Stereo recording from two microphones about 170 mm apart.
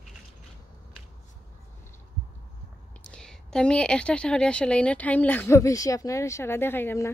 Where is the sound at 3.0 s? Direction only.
5° left (ahead or behind).